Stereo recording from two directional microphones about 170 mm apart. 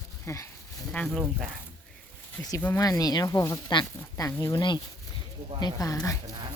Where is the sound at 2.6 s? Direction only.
10° left (ahead or behind).